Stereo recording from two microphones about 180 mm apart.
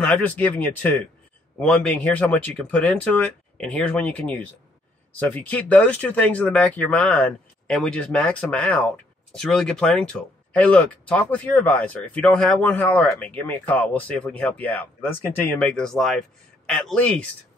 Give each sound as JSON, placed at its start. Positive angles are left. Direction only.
{"t": 0.0, "sound": "speech", "side_deg": 10}